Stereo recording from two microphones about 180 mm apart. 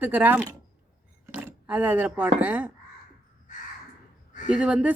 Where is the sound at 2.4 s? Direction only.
10° right (ahead or behind).